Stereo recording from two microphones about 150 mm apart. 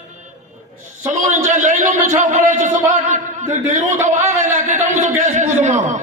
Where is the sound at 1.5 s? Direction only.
60° right (ahead or behind).